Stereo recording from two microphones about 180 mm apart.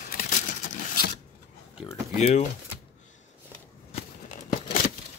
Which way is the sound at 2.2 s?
40° left (ahead or behind).